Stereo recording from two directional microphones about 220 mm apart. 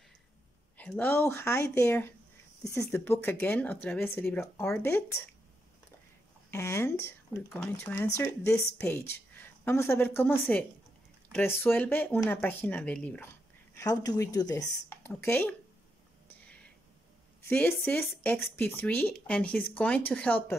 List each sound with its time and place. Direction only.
0.7 s speech: 10° left (ahead or behind)
6.5 s speech: 10° left (ahead or behind)
11.3 s speech: 10° left (ahead or behind)
17.5 s speech: 5° left (ahead or behind)